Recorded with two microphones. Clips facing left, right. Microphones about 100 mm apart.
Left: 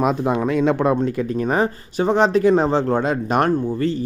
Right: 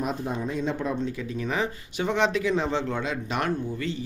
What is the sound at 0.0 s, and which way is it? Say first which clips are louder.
Speech: left 10 dB; 85° left.